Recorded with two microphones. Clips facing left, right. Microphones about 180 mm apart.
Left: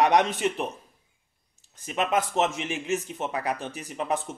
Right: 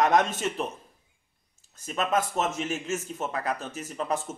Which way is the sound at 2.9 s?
20° left (ahead or behind).